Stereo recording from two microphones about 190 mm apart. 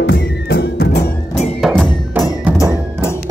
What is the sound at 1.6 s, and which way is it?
Music, 5° left (ahead or behind).